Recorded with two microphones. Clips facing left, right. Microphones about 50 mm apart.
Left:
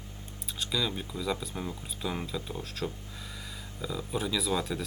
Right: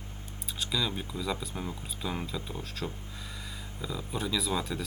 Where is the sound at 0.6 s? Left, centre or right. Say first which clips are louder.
Even; centre.